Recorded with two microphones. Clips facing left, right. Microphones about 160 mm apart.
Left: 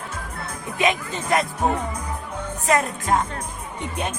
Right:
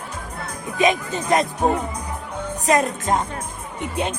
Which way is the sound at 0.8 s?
20° right (ahead or behind).